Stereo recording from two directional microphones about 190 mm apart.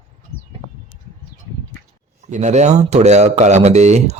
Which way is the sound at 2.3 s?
40° right (ahead or behind).